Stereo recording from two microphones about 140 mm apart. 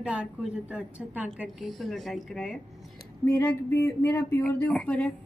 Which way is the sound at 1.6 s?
Centre (ahead or behind).